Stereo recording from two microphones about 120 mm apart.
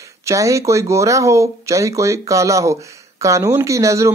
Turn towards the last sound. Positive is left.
turn(degrees=-25)  # may be behind; listen again after turning